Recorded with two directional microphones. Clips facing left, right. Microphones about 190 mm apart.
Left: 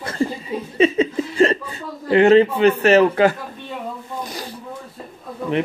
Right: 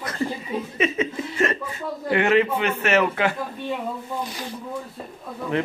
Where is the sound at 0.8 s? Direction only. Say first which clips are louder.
Left 8 dB; 30° left (ahead or behind).